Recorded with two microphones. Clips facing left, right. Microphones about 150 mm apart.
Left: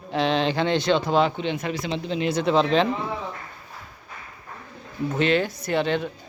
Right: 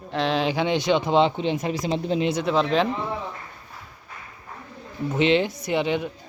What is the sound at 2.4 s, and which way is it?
Speech, centre (ahead or behind).